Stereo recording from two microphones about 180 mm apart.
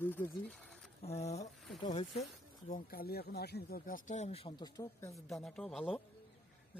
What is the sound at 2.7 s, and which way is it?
Speech, 50° left (ahead or behind).